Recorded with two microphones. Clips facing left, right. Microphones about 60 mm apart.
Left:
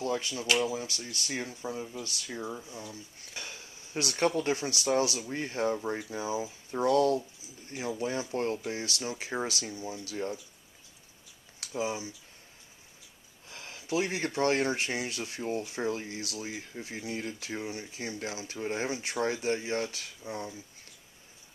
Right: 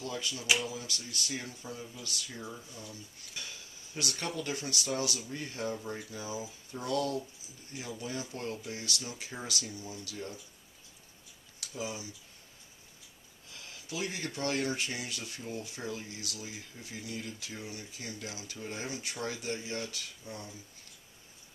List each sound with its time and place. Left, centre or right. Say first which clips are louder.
0.0 s speech: left 6 dB; left
0.5 s speech: left 4 dB; centre
0.7 s speech: left 3 dB; left
11.6 s speech: left 6 dB; left
13.5 s speech: left 9 dB; left